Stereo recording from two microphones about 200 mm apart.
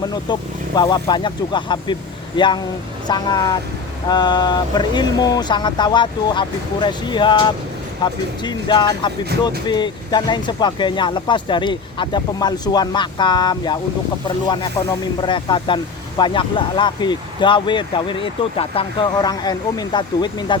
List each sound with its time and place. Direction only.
0.0 s speech: 20° left (ahead or behind)